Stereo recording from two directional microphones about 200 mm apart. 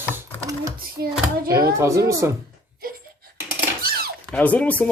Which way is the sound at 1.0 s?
50° right (ahead or behind).